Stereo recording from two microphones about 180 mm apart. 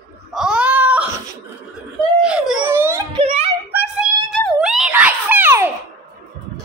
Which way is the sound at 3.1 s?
30° right (ahead or behind).